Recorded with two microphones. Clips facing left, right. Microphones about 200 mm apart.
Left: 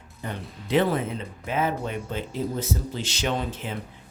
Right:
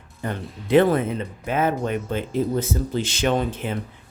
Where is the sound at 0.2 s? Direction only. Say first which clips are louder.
Right 5 dB; 55° right (ahead or behind).